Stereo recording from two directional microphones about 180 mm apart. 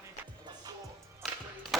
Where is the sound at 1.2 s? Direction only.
Centre (ahead or behind).